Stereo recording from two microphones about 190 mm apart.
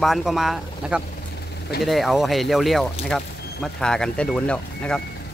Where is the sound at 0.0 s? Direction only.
Centre (ahead or behind).